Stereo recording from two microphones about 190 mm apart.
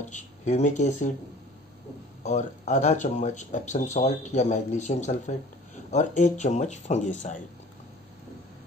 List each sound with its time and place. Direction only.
0.0 s speech: 40° left (ahead or behind)
2.2 s speech: 35° left (ahead or behind)